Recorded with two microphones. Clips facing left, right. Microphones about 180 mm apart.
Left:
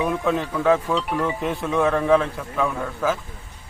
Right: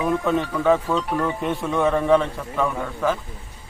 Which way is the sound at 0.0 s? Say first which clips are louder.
Right 1 dB; centre (ahead or behind).